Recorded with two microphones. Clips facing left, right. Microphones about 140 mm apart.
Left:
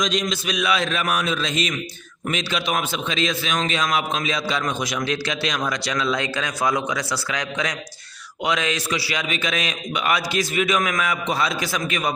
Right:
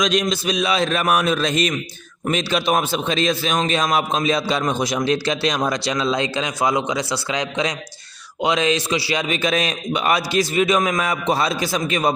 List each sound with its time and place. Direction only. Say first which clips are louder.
0.0 s a man's voice: right 4 dB; 60° right (ahead or behind)
0.3 s a man's voice: right 3 dB; 30° right (ahead or behind)
0.9 s a man's voice: right 5 dB; 40° right (ahead or behind)